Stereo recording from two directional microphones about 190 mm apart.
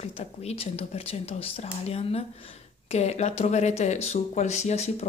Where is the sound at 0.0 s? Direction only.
35° left (ahead or behind).